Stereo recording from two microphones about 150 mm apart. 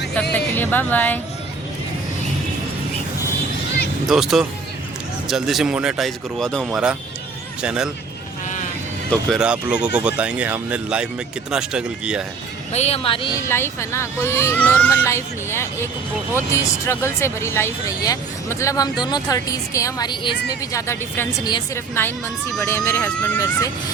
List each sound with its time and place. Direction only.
0.3 s speech: 10° left (ahead or behind)
4.0 s speech: 5° right (ahead or behind)
9.0 s speech: 5° right (ahead or behind)
12.7 s speech: 45° left (ahead or behind)
13.5 s speech: 15° left (ahead or behind)
23.4 s speech: 20° left (ahead or behind)